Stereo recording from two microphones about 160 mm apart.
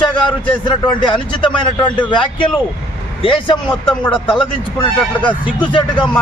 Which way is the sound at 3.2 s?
30° left (ahead or behind).